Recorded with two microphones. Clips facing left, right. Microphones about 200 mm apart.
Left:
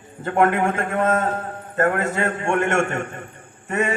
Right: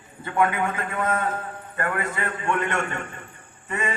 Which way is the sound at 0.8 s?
45° left (ahead or behind).